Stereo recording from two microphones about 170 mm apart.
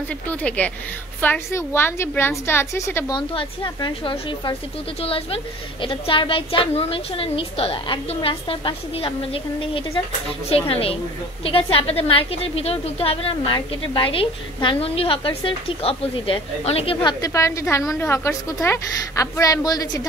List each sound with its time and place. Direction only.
0.1 s a woman's voice: 10° left (ahead or behind)
3.2 s a woman's voice: 30° left (ahead or behind)
17.2 s a woman's voice: 15° left (ahead or behind)